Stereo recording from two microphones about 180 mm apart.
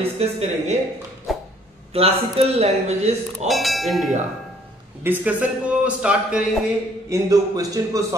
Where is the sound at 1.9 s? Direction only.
35° right (ahead or behind).